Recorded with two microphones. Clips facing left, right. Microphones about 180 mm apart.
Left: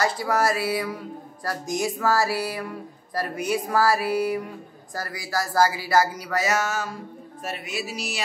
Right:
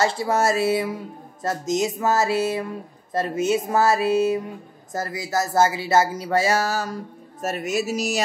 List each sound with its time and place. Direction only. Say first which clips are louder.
0.0 s speech: right 2 dB; 25° right (ahead or behind)
7.4 s music: right 8 dB; 45° right (ahead or behind)